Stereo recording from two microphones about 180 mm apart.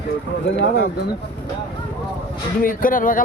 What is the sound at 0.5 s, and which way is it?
Speech, 60° left (ahead or behind).